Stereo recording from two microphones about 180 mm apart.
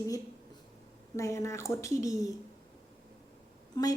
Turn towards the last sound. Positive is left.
turn(degrees=20)  # may be behind; listen again after turning